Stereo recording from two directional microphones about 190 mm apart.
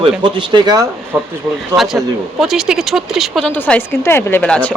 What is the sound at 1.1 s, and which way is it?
Speech, 5° right (ahead or behind).